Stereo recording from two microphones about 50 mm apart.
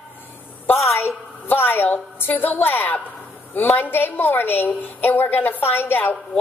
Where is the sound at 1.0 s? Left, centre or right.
Left.